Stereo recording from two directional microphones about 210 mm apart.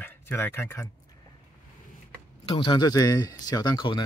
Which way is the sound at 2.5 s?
20° left (ahead or behind).